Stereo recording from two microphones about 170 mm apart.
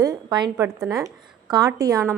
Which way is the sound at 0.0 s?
20° right (ahead or behind).